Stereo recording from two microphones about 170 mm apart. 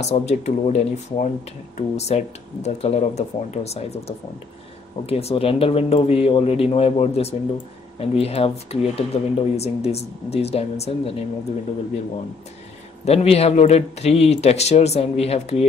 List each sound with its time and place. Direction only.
0.0 s speech: 40° left (ahead or behind)
5.0 s speech: 35° left (ahead or behind)
13.0 s speech: 35° left (ahead or behind)